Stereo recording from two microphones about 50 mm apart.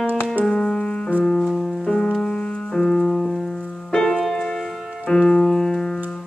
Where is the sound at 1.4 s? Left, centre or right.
Centre.